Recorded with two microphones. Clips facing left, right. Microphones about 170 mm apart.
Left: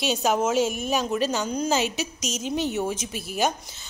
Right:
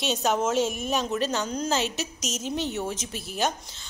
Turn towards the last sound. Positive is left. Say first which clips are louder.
# left 3 dB
turn(degrees=10)  # may be behind; listen again after turning